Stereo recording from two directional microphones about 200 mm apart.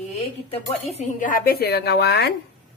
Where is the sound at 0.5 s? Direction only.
30° left (ahead or behind).